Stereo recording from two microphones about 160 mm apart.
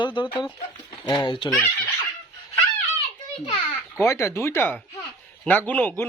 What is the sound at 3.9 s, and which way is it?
Speech, 15° left (ahead or behind).